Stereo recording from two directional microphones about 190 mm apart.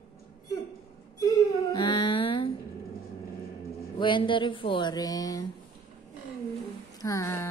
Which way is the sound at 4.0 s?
25° left (ahead or behind).